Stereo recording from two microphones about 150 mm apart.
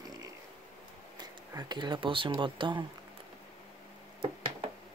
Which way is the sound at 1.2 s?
30° right (ahead or behind).